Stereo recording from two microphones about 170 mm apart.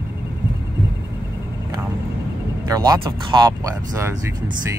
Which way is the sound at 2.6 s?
20° right (ahead or behind).